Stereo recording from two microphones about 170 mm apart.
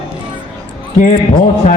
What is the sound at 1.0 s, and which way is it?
Speech, 45° left (ahead or behind).